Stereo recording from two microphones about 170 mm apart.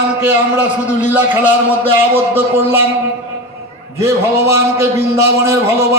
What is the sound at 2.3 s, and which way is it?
Speech, 15° right (ahead or behind).